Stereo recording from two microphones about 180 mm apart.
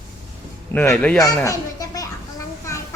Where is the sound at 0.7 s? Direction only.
10° left (ahead or behind).